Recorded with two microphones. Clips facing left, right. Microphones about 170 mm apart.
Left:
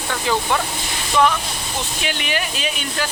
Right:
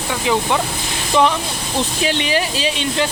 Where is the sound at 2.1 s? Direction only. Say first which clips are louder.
Right 3 dB; 30° right (ahead or behind).